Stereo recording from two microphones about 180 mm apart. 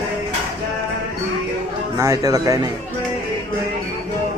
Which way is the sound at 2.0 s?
20° right (ahead or behind).